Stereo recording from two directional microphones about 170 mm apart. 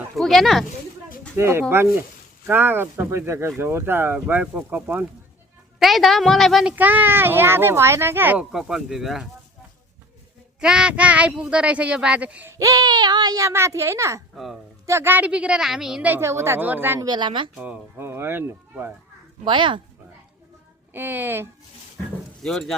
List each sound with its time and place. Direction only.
0.2 s a child's voice: centre (ahead or behind)
1.4 s a child's voice: 15° right (ahead or behind)
10.6 s speech: 5° right (ahead or behind)
14.3 s a child's voice: centre (ahead or behind)
14.8 s speech: 15° right (ahead or behind)
17.1 s speech: 25° right (ahead or behind)
17.6 s speech: 10° right (ahead or behind)
19.5 s speech: 30° right (ahead or behind)
20.9 s speech: 10° right (ahead or behind)
22.4 s a child's voice: 5° left (ahead or behind)